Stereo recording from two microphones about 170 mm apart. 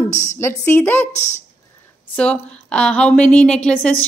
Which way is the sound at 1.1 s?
40° left (ahead or behind).